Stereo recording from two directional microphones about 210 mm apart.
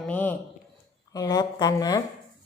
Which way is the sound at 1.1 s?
20° left (ahead or behind).